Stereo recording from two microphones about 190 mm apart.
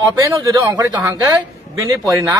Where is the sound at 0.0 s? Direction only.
20° right (ahead or behind).